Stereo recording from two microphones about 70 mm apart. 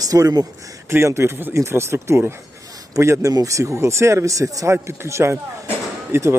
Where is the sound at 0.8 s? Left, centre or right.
Right.